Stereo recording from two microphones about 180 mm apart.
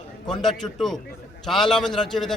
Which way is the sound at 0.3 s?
Centre (ahead or behind).